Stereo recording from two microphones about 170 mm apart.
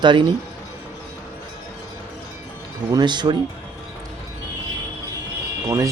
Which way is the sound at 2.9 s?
25° right (ahead or behind).